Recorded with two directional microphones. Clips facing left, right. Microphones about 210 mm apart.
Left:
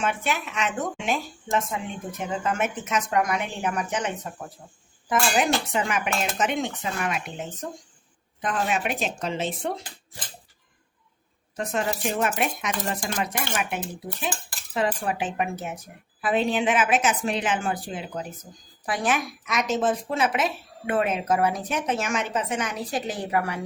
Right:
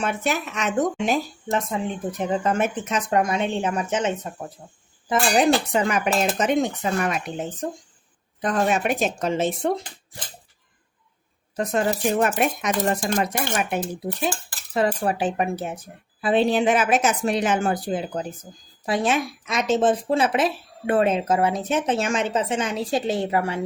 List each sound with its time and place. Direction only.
0.0 s speech: 40° right (ahead or behind); by 4.5 s 25° right (ahead or behind)
5.4 s speech: 40° right (ahead or behind)
11.5 s speech: 40° right (ahead or behind)
18.9 s speech: 25° right (ahead or behind)